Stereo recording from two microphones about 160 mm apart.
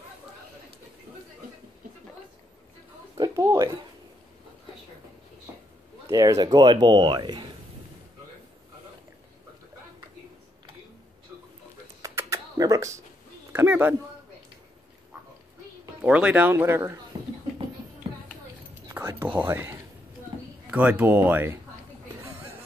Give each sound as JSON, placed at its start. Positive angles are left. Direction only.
{"t": 3.2, "sound": "speech", "side_deg": -20}
{"t": 6.0, "sound": "speech", "side_deg": -20}
{"t": 12.0, "sound": "a sound", "side_deg": -20}
{"t": 13.5, "sound": "speech", "side_deg": -10}
{"t": 16.0, "sound": "speech", "side_deg": -10}
{"t": 17.1, "sound": "a sound", "side_deg": -30}
{"t": 18.9, "sound": "whispering", "side_deg": -15}
{"t": 20.7, "sound": "speech", "side_deg": -10}